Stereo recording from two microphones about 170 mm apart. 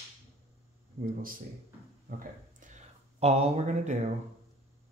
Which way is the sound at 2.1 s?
50° right (ahead or behind).